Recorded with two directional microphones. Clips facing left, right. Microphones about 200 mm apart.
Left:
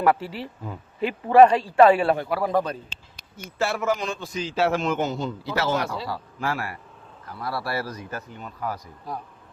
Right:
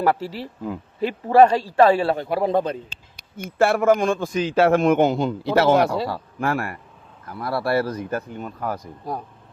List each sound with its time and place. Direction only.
0.0 s speech: 35° right (ahead or behind)
2.0 s a man's voice: 25° right (ahead or behind)
3.2 s a man's voice: 55° right (ahead or behind)